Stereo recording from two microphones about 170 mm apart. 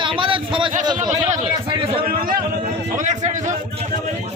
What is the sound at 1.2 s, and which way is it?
Speech, 45° right (ahead or behind).